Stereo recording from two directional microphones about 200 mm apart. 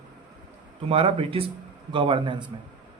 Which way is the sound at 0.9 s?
30° right (ahead or behind).